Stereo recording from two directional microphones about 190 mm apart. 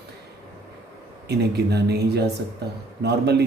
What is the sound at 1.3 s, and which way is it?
Speech, 60° right (ahead or behind).